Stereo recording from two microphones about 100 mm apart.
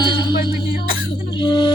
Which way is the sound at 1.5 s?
50° left (ahead or behind).